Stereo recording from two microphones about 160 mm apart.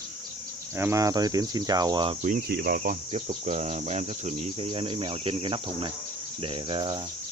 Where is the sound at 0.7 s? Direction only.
20° right (ahead or behind).